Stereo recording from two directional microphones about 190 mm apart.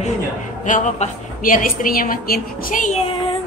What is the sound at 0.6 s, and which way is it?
A woman's voice, 40° left (ahead or behind).